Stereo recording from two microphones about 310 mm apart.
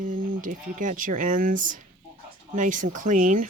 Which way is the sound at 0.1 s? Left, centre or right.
Right.